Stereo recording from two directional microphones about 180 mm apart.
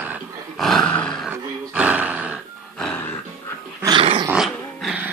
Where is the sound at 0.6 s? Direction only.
Centre (ahead or behind).